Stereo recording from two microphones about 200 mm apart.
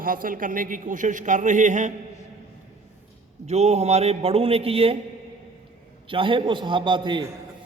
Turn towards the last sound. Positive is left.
turn(degrees=-25)  # may be behind; listen again after turning